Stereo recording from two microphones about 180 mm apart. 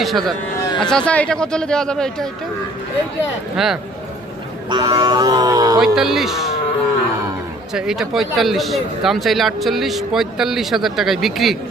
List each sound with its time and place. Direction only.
0.0 s speech: centre (ahead or behind)
3.5 s speech: centre (ahead or behind)
4.7 s speech: 25° right (ahead or behind)
5.8 s speech: centre (ahead or behind)
7.7 s speech: 5° right (ahead or behind)